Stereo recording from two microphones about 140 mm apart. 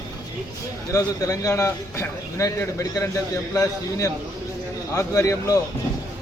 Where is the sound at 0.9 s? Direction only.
25° left (ahead or behind).